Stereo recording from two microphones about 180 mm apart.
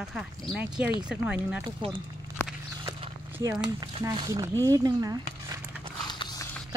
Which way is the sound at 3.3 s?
10° right (ahead or behind).